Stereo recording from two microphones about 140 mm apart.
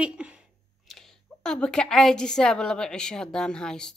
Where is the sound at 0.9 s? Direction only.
5° left (ahead or behind).